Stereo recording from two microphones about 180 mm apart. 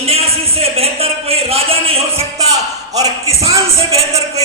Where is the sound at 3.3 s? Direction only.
35° right (ahead or behind).